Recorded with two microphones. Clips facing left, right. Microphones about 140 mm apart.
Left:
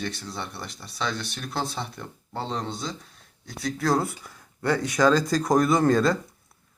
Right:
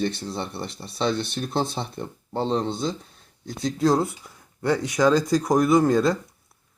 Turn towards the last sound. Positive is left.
turn(degrees=-15)  # may be behind; listen again after turning